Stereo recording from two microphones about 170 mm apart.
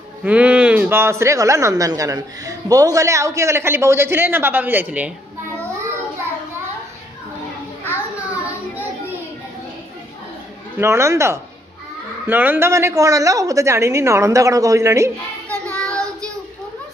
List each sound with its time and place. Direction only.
0.2 s speech: 10° right (ahead or behind)
10.8 s speech: 15° right (ahead or behind)
15.7 s child singing: 5° left (ahead or behind)